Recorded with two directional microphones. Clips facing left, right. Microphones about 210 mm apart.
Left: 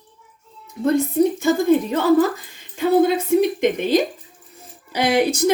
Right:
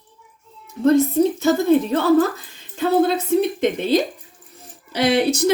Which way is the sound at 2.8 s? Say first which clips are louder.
Left 1 dB; 10° left (ahead or behind).